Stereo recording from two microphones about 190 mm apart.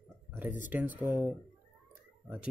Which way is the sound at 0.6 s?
10° right (ahead or behind).